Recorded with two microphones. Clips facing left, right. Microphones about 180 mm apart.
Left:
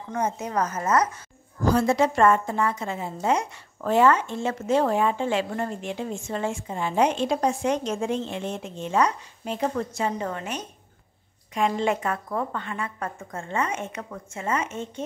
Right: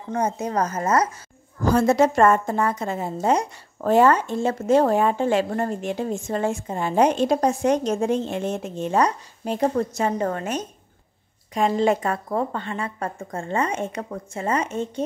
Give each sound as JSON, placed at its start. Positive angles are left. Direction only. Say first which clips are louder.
{"t": 0.1, "sound": "a woman's voice", "louder": "right 3 dB", "side_deg": -35}
{"t": 1.7, "sound": "a woman's voice", "louder": "right 3 dB", "side_deg": -45}